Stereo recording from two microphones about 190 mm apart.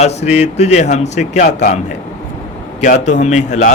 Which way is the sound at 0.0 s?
35° left (ahead or behind).